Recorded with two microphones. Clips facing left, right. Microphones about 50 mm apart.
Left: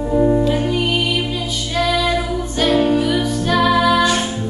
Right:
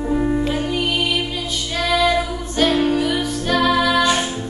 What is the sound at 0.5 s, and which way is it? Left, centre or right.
Music, centre.